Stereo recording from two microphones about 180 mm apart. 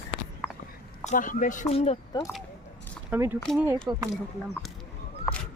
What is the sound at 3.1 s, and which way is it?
Speech, 10° right (ahead or behind).